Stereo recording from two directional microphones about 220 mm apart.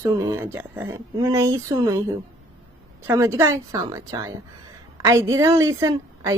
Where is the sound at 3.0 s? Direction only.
10° right (ahead or behind).